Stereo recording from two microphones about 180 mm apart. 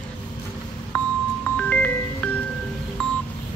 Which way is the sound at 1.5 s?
5° left (ahead or behind).